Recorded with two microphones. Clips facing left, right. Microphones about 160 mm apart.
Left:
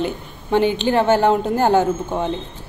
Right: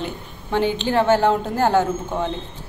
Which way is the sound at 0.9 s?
20° left (ahead or behind).